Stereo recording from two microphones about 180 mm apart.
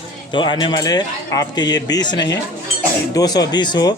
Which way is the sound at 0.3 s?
25° left (ahead or behind).